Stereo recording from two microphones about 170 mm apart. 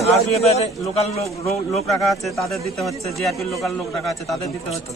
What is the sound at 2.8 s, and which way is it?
A man's voice, centre (ahead or behind).